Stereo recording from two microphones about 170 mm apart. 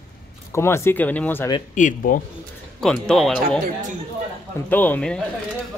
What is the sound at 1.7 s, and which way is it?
Speech, 50° left (ahead or behind).